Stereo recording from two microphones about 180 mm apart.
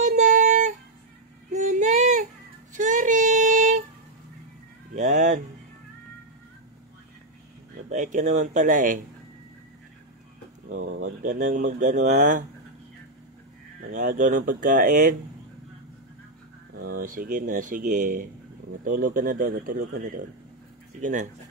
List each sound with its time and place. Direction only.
0.0 s music: 45° right (ahead or behind)
1.5 s female singing: 40° right (ahead or behind)
2.7 s child singing: 45° right (ahead or behind)
4.9 s a sound: 40° right (ahead or behind)
7.9 s speech: 45° right (ahead or behind)
10.8 s a sound: 55° right (ahead or behind)
11.3 s speech: 45° right (ahead or behind)
13.9 s speech: 45° right (ahead or behind)
16.7 s speech: 55° right (ahead or behind)
21.0 s speech: 45° right (ahead or behind)